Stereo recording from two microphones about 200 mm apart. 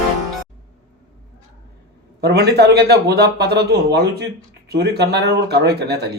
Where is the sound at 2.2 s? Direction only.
55° right (ahead or behind).